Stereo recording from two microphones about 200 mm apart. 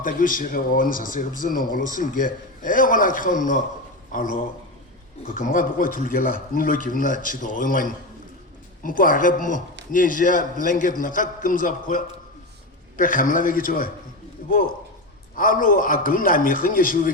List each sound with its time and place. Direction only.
0.0 s a man's voice: 45° left (ahead or behind)
15.4 s speech: 45° left (ahead or behind)